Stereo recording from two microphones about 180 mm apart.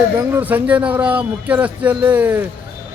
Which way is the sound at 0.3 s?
10° right (ahead or behind).